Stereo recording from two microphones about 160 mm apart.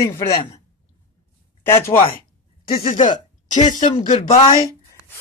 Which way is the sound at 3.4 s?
50° left (ahead or behind).